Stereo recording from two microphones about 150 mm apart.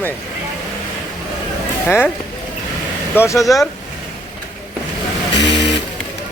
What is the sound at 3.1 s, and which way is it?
Speech, 20° left (ahead or behind).